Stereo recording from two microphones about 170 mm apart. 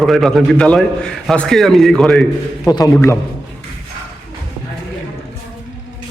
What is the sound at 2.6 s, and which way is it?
Speech, 20° left (ahead or behind).